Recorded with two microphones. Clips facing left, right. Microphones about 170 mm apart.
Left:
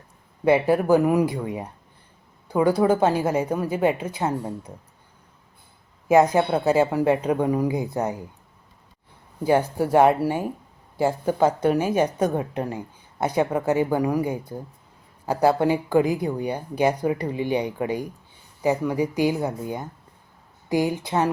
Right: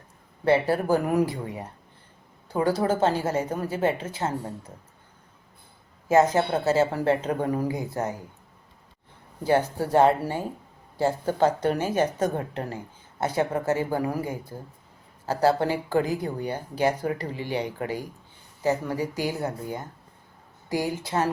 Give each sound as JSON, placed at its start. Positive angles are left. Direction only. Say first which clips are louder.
{"t": 0.4, "sound": "a woman's voice", "louder": "left 3 dB", "side_deg": 15}
{"t": 6.1, "sound": "a woman's voice", "louder": "left 3 dB", "side_deg": 15}
{"t": 9.4, "sound": "a woman's voice", "louder": "left 3 dB", "side_deg": 15}